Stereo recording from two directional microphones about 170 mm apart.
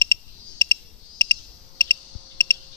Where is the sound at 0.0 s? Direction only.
30° right (ahead or behind).